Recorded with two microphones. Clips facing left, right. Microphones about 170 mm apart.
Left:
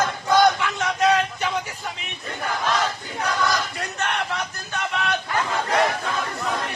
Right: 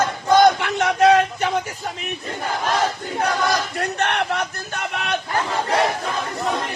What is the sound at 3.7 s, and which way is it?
Battle cry, 65° right (ahead or behind).